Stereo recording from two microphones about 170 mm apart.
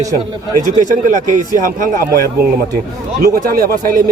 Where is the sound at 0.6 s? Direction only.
50° right (ahead or behind).